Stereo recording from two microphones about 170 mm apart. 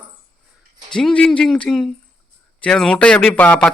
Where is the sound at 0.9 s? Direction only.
5° left (ahead or behind).